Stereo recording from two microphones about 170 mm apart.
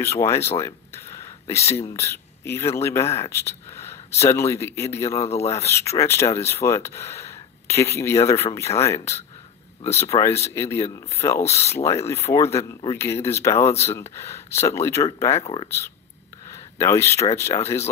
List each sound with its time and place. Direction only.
0.0 s speech: 15° left (ahead or behind)
0.6 s a sound: 15° left (ahead or behind)
1.8 s speech: 15° left (ahead or behind)
11.4 s speech: 40° left (ahead or behind)
11.7 s speech: 15° left (ahead or behind)
15.4 s speech: 30° left (ahead or behind)
16.5 s speech: 15° left (ahead or behind)